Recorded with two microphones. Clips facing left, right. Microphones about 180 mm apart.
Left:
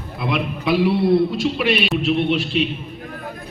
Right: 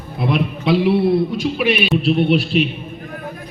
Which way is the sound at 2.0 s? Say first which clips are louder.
Right 3 dB; 35° right (ahead or behind).